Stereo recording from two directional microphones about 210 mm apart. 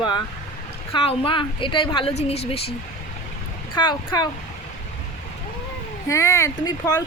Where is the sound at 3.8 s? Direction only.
20° left (ahead or behind).